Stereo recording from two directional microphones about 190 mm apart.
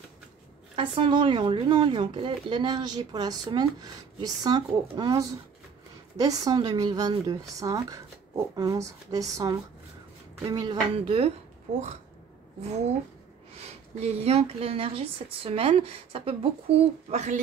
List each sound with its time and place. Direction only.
0.7 s speech: 30° right (ahead or behind)
13.9 s a woman's voice: 35° right (ahead or behind)